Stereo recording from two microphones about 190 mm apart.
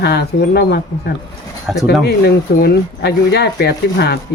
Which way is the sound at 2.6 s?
60° left (ahead or behind).